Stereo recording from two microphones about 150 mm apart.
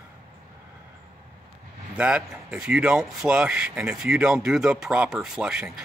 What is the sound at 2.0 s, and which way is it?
Speech, 5° right (ahead or behind).